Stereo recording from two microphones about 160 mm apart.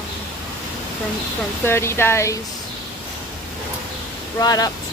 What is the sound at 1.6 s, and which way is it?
Speech, 15° left (ahead or behind).